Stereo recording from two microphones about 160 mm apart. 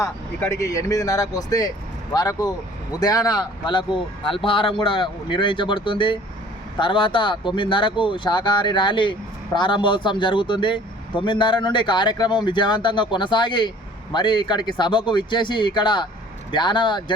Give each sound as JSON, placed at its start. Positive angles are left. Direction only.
{"t": 0.0, "sound": "speech", "side_deg": 20}